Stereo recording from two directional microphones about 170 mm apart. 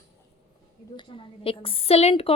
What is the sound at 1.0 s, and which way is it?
Speech, 30° left (ahead or behind).